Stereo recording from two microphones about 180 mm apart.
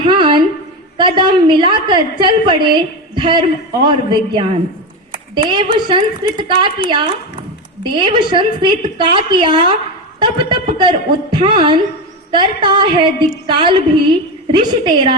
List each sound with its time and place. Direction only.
0.0 s a woman's voice: 25° right (ahead or behind)